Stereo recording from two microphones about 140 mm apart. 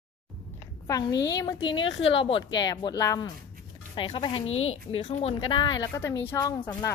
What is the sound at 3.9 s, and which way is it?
Speech, 40° left (ahead or behind).